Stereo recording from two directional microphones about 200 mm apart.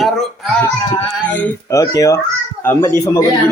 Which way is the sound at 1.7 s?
15° left (ahead or behind).